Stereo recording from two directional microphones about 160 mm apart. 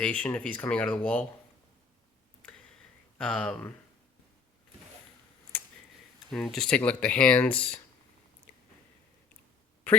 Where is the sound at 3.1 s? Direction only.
5° left (ahead or behind).